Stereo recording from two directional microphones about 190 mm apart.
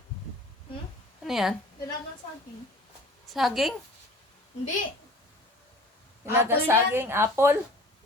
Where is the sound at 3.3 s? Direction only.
Centre (ahead or behind).